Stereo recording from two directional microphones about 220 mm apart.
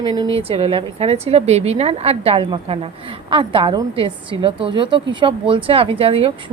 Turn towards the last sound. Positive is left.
turn(degrees=-25)  # may be behind; listen again after turning